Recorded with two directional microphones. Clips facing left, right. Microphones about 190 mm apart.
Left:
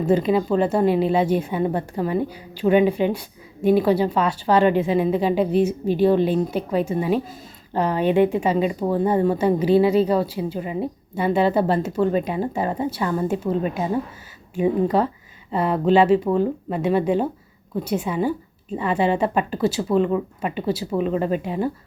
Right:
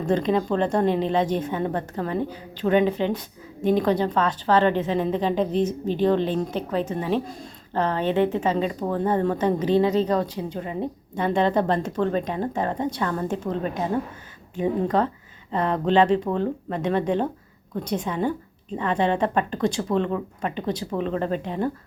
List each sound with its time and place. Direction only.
0.0 s a woman's voice: 10° left (ahead or behind)